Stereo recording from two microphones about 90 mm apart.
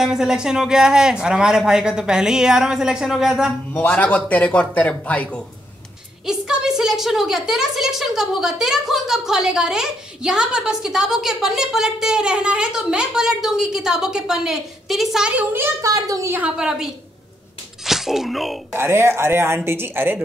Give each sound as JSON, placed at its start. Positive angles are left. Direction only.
{"t": 0.0, "sound": "speech", "side_deg": -5}
{"t": 3.8, "sound": "speech", "side_deg": 20}
{"t": 6.2, "sound": "a woman's voice", "side_deg": -5}
{"t": 15.3, "sound": "a woman's voice", "side_deg": -25}
{"t": 15.8, "sound": "a woman's voice", "side_deg": -40}
{"t": 16.3, "sound": "speech", "side_deg": -15}
{"t": 18.7, "sound": "a woman's voice", "side_deg": -30}